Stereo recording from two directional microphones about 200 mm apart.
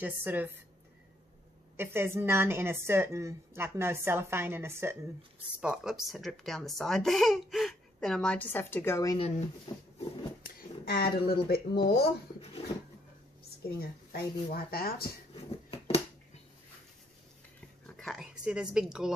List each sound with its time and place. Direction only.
0.0 s a woman's voice: 10° right (ahead or behind)
1.8 s a woman's voice: 10° right (ahead or behind); by 9.2 s 15° left (ahead or behind)
10.9 s speech: 50° left (ahead or behind)
12.6 s a sound: 30° left (ahead or behind)
13.7 s speech: 50° left (ahead or behind)
15.5 s a sound: 30° left (ahead or behind)
17.8 s speech: centre (ahead or behind)